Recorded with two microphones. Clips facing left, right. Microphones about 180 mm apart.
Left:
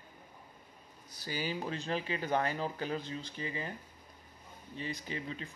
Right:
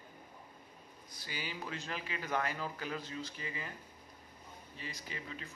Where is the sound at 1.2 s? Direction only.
35° left (ahead or behind).